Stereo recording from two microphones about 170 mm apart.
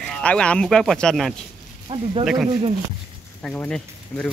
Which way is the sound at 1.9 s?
25° right (ahead or behind).